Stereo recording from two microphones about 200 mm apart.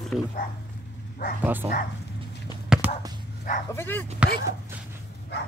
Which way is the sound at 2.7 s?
10° right (ahead or behind).